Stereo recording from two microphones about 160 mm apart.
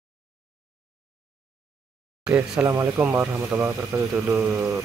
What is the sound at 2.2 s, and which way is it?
Speech, 10° right (ahead or behind).